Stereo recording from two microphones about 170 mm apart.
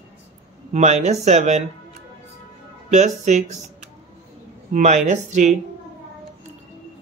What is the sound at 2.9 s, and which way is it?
Speech, 45° right (ahead or behind).